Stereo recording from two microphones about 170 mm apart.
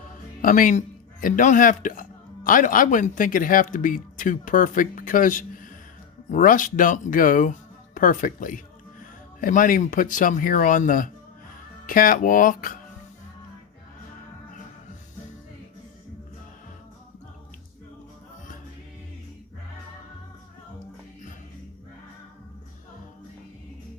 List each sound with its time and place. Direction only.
0.4 s a man's voice: 55° left (ahead or behind)